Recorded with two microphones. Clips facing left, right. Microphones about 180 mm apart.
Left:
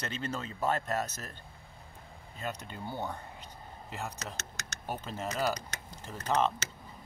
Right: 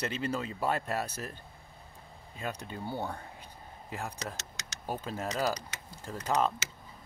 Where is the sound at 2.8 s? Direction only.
10° right (ahead or behind).